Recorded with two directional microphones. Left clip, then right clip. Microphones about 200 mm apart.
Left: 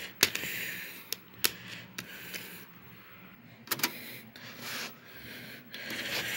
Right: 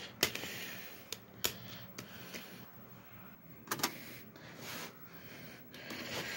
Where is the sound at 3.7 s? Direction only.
Centre (ahead or behind).